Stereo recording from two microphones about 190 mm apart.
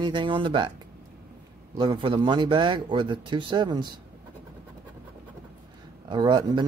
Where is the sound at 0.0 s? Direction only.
25° right (ahead or behind).